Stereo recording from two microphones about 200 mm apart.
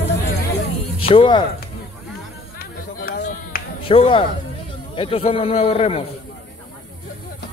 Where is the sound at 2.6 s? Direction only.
50° left (ahead or behind).